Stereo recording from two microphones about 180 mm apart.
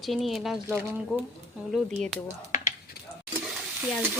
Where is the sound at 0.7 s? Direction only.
10° right (ahead or behind).